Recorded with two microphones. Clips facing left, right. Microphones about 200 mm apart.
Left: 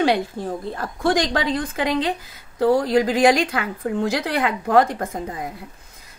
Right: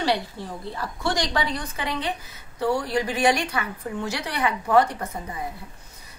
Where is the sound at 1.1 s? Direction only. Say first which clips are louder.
Left 5 dB; 90° left.